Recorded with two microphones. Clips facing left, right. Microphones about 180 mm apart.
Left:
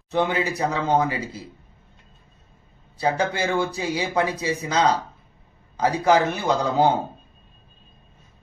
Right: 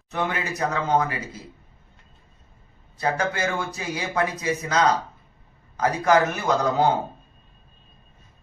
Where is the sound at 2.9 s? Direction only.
30° left (ahead or behind).